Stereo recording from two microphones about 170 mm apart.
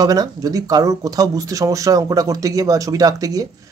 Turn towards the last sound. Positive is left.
turn(degrees=-20)  # may be behind; listen again after turning